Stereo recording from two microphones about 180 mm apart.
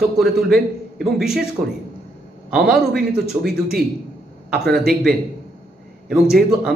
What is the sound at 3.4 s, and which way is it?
Speech, 60° right (ahead or behind).